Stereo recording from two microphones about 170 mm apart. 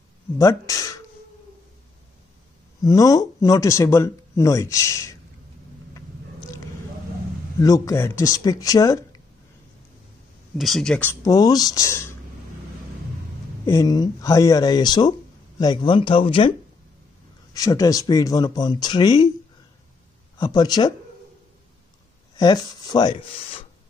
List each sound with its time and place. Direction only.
0.4 s speech: 20° left (ahead or behind)
2.8 s speech: 20° left (ahead or behind)
7.6 s speech: 20° left (ahead or behind)
10.6 s speech: centre (ahead or behind); by 12.0 s 20° left (ahead or behind)
13.7 s speech: 20° left (ahead or behind)
17.6 s speech: 20° left (ahead or behind)
20.3 s speech: 25° left (ahead or behind)
22.4 s speech: 25° left (ahead or behind)